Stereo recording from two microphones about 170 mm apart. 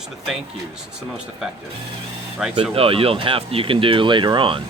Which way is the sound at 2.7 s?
35° right (ahead or behind).